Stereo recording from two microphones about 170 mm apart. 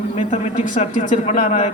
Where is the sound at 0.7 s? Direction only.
50° left (ahead or behind).